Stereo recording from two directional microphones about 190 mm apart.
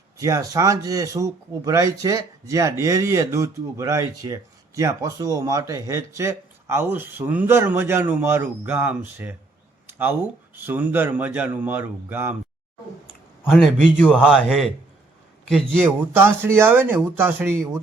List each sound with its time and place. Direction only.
0.2 s speech: 15° right (ahead or behind)
13.4 s a man's voice: 5° left (ahead or behind)
14.3 s a man's voice: 5° right (ahead or behind)
15.8 s speech: 10° right (ahead or behind)